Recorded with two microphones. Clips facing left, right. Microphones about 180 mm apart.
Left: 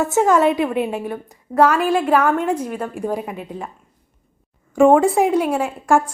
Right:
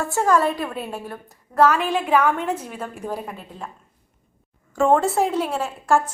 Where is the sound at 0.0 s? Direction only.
20° left (ahead or behind).